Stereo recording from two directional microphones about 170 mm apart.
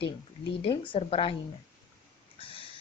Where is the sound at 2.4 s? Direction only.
35° left (ahead or behind).